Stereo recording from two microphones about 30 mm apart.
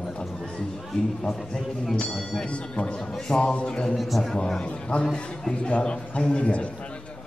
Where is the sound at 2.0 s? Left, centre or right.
Left.